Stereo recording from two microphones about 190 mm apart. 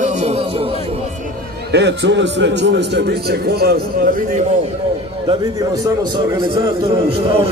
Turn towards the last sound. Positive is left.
turn(degrees=-30)  # may be behind; listen again after turning